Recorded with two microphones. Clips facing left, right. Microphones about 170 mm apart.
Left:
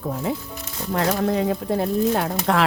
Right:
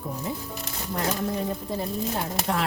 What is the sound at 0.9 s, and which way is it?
Speech, 90° left.